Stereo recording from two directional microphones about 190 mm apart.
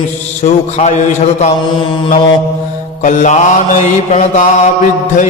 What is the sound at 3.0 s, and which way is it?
Mantra, 40° left (ahead or behind).